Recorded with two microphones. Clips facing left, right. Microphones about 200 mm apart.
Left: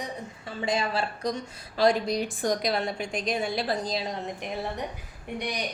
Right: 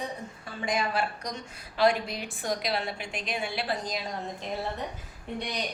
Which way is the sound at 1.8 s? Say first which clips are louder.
Left 2 dB; 40° left (ahead or behind).